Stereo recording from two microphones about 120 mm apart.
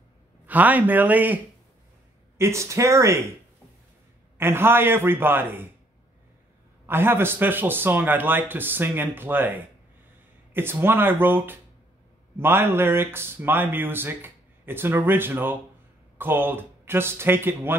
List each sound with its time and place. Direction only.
0.5 s a man's voice: 15° right (ahead or behind)
4.4 s a man's voice: 20° right (ahead or behind)
6.9 s a man's voice: 20° right (ahead or behind)